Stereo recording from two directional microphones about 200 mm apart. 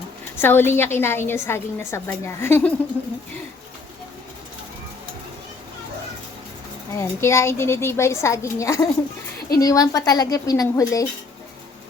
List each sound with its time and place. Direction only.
0.3 s a woman's voice: 10° left (ahead or behind)
6.9 s a woman's voice: 15° left (ahead or behind)